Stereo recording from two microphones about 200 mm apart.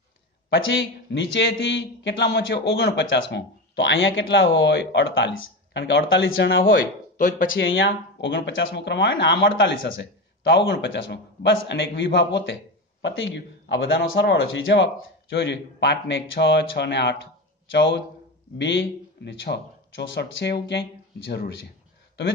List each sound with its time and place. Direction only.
0.5 s a man's voice: 65° left (ahead or behind)
6.6 s speech: 45° left (ahead or behind)
7.4 s a man's voice: 70° left (ahead or behind); by 21.5 s 55° left (ahead or behind)